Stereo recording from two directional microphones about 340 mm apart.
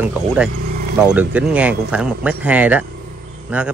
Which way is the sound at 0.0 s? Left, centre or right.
Centre.